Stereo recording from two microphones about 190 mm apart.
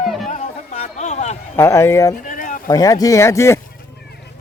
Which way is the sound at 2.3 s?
45° left (ahead or behind).